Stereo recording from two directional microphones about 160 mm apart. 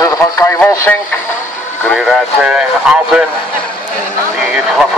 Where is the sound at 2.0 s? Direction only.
Centre (ahead or behind).